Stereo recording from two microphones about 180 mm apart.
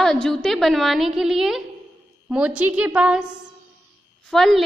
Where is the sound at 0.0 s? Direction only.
5° left (ahead or behind).